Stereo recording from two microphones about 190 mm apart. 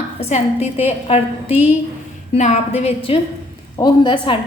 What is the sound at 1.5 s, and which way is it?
Speech, 10° right (ahead or behind).